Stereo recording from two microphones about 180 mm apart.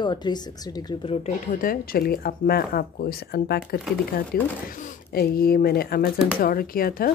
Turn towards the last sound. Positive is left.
turn(degrees=55)  # may be behind; listen again after turning